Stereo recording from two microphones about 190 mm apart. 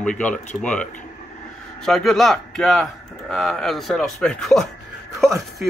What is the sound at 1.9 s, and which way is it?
A man's voice, centre (ahead or behind).